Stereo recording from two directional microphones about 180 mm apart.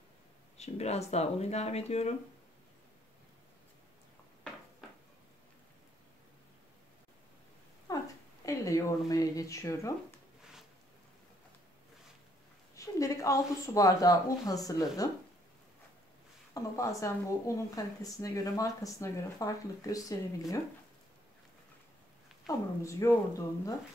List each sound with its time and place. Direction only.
0.6 s speech: 35° left (ahead or behind)
7.9 s a sound: 20° left (ahead or behind)
8.5 s speech: 15° left (ahead or behind)
12.7 s speech: 20° left (ahead or behind)
16.5 s speech: 15° left (ahead or behind)
22.8 s speech: 15° left (ahead or behind)